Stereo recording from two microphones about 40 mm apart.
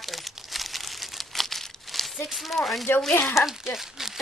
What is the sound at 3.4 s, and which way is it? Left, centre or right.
Speech, centre.